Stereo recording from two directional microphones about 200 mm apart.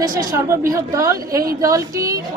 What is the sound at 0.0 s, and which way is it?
A woman's voice, 20° right (ahead or behind).